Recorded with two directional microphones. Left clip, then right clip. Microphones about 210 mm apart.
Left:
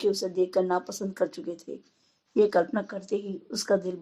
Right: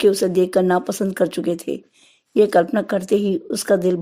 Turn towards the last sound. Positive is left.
turn(degrees=-35)  # may be behind; listen again after turning